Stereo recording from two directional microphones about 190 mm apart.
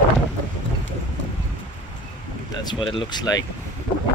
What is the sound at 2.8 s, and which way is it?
Speech, 25° left (ahead or behind).